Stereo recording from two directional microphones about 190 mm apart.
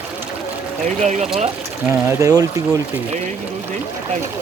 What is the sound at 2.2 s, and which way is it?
Speech, 20° right (ahead or behind).